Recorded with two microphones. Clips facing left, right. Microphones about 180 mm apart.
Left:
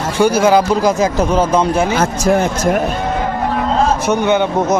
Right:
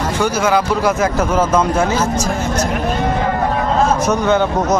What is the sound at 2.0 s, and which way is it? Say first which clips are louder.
Speech: left 4 dB; 55° left (ahead or behind).